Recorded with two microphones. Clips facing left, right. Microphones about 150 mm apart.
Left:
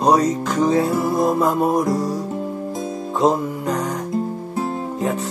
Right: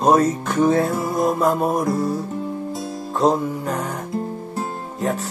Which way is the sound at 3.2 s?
Centre (ahead or behind).